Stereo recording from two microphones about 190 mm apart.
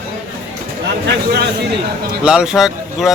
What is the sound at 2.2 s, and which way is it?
Speech, 5° right (ahead or behind).